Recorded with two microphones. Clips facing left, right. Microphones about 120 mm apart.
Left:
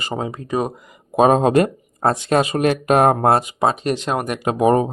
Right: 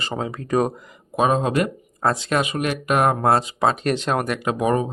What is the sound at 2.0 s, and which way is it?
Speech, 30° left (ahead or behind).